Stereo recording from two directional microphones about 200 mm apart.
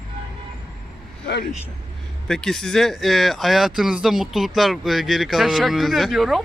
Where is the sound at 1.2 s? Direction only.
55° left (ahead or behind).